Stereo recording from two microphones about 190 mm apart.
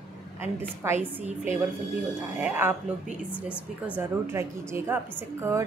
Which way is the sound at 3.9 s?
15° right (ahead or behind).